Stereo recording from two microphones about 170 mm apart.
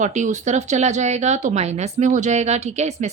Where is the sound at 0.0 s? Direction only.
45° right (ahead or behind).